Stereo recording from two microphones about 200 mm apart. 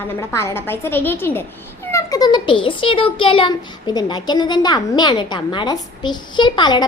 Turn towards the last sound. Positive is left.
turn(degrees=20)  # may be behind; listen again after turning